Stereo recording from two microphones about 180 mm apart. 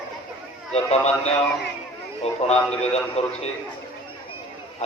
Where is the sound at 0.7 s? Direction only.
35° left (ahead or behind).